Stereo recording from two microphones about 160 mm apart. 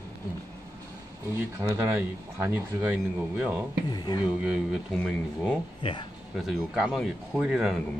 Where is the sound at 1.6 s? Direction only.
15° right (ahead or behind).